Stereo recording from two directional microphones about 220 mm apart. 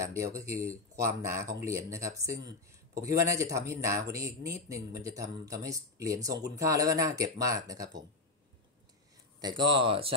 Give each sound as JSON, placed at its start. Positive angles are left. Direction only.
{"t": 0.1, "sound": "speech", "side_deg": -15}
{"t": 9.4, "sound": "speech", "side_deg": -20}